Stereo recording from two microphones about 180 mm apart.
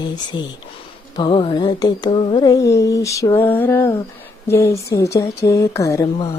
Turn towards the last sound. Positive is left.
turn(degrees=20)  # may be behind; listen again after turning